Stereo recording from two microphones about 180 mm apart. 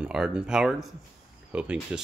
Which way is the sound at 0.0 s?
5° right (ahead or behind).